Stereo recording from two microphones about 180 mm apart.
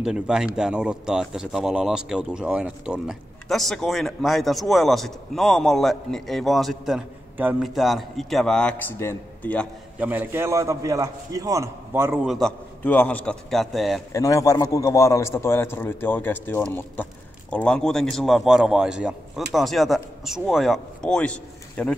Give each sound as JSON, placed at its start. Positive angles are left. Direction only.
{"t": 0.0, "sound": "speech", "side_deg": -5}
{"t": 9.9, "sound": "a man's voice", "side_deg": -10}
{"t": 12.3, "sound": "speech", "side_deg": 0}
{"t": 14.1, "sound": "a man's voice", "side_deg": 20}